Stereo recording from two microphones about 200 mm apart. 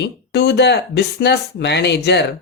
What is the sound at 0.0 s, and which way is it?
Speech, 55° left (ahead or behind).